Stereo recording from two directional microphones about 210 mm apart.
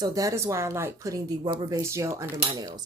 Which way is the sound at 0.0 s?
15° right (ahead or behind).